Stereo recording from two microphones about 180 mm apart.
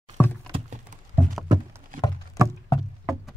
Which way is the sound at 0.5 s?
40° right (ahead or behind).